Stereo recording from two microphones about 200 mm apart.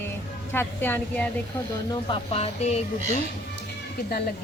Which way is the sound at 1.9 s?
25° left (ahead or behind).